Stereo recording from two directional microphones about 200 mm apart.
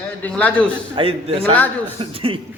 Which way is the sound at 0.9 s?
30° right (ahead or behind).